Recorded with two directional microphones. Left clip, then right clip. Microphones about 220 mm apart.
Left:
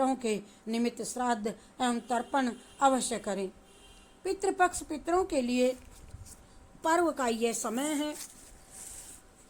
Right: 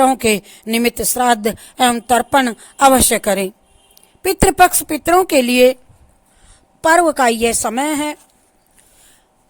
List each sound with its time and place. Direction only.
0.0 s speech: 45° right (ahead or behind)
6.8 s speech: 45° right (ahead or behind)